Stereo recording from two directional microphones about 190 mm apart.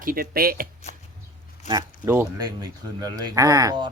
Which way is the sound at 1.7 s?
15° right (ahead or behind).